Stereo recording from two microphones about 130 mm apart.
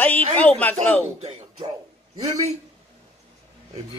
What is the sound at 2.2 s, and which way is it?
Speech, 60° right (ahead or behind).